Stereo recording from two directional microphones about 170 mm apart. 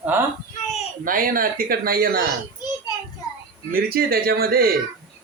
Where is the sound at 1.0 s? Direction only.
55° right (ahead or behind).